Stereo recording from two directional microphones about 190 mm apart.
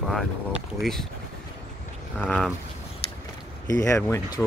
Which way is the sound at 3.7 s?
15° left (ahead or behind).